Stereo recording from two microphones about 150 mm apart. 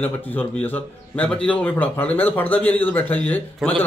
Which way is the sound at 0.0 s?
10° left (ahead or behind).